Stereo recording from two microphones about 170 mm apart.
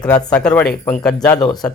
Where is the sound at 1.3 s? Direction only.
25° left (ahead or behind).